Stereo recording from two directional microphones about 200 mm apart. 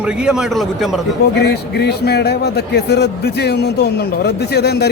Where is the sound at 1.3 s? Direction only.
55° left (ahead or behind).